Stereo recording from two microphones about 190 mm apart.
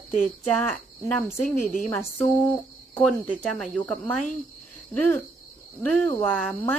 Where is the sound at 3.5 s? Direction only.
5° left (ahead or behind).